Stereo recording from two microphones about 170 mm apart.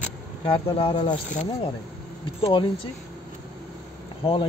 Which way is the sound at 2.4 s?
30° left (ahead or behind).